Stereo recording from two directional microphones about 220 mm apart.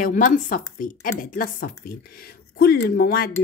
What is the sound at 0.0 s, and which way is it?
A woman's voice, 35° left (ahead or behind).